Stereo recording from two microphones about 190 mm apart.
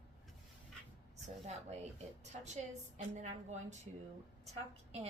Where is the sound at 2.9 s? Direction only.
40° right (ahead or behind).